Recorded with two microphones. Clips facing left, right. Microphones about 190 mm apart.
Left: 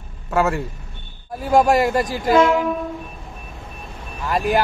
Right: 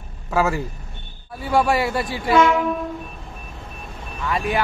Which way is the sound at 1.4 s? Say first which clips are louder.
Left 4 dB; 40° left (ahead or behind).